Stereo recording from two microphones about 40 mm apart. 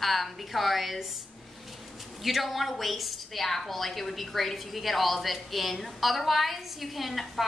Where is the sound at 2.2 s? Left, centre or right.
Centre.